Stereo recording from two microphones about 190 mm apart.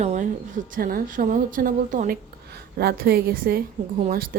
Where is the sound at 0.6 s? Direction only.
50° right (ahead or behind).